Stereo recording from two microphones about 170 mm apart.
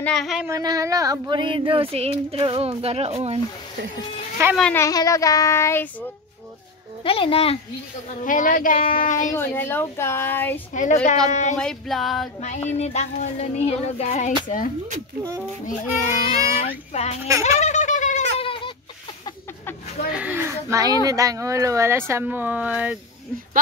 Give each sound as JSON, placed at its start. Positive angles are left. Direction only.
{"t": 0.0, "sound": "music", "side_deg": 5}
{"t": 0.5, "sound": "speech", "side_deg": -20}
{"t": 4.4, "sound": "speech", "side_deg": -15}
{"t": 4.7, "sound": "child singing", "side_deg": 20}
{"t": 7.1, "sound": "music", "side_deg": 35}
{"t": 8.2, "sound": "speech", "side_deg": 50}
{"t": 9.3, "sound": "speech", "side_deg": 15}
{"t": 10.7, "sound": "speech", "side_deg": 45}
{"t": 11.5, "sound": "music", "side_deg": 5}
{"t": 12.4, "sound": "music", "side_deg": 45}
{"t": 16.3, "sound": "music", "side_deg": 40}
{"t": 17.6, "sound": "a sound", "side_deg": 45}
{"t": 18.4, "sound": "goat", "side_deg": 30}
{"t": 20.1, "sound": "speech", "side_deg": -10}